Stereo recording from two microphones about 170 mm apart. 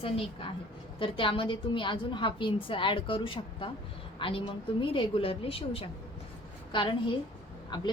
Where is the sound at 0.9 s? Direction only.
30° left (ahead or behind).